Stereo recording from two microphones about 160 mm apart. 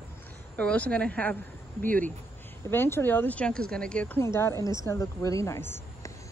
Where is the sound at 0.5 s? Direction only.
10° left (ahead or behind).